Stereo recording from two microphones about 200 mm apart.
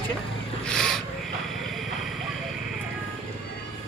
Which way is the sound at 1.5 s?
Centre (ahead or behind).